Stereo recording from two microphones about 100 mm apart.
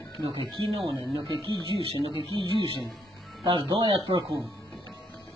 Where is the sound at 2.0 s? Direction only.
50° right (ahead or behind).